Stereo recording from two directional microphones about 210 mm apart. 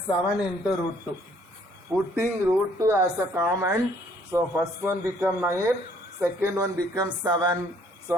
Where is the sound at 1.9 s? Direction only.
5° right (ahead or behind).